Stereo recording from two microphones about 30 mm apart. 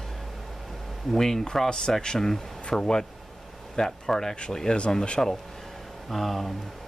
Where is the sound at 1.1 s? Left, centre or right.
Centre.